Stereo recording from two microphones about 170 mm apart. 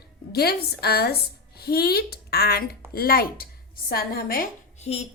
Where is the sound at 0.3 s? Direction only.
65° left (ahead or behind).